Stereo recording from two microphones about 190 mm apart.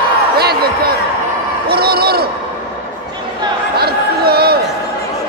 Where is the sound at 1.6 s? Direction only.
55° right (ahead or behind).